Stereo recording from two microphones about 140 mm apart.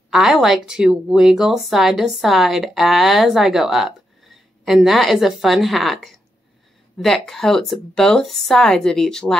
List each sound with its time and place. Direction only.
0.1 s speech: 5° right (ahead or behind)